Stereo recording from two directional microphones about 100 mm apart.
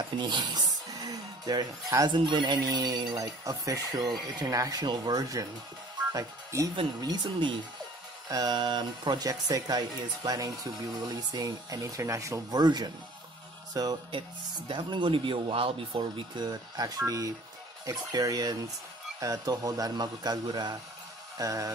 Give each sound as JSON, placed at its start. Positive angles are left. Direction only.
{"t": 0.2, "sound": "music", "side_deg": -50}
{"t": 2.0, "sound": "speech", "side_deg": -55}
{"t": 7.0, "sound": "speech", "side_deg": -45}
{"t": 14.7, "sound": "speech", "side_deg": -55}
{"t": 16.3, "sound": "speech", "side_deg": -40}